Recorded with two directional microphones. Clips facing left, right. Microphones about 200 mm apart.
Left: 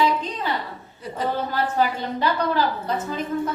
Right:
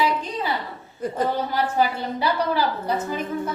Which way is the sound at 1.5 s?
10° right (ahead or behind).